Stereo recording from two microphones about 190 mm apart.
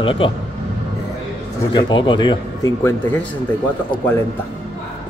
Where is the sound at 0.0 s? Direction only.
25° left (ahead or behind).